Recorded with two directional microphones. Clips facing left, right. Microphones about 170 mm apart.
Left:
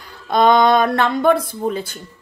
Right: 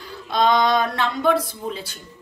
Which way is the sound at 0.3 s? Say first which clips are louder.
Left 5 dB; 55° left (ahead or behind).